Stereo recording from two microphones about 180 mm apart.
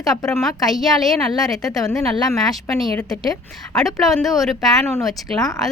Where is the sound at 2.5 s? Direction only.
Centre (ahead or behind).